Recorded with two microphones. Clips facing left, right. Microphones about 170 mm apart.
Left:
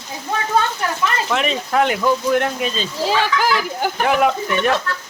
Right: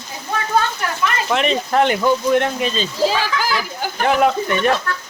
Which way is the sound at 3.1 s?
60° left (ahead or behind).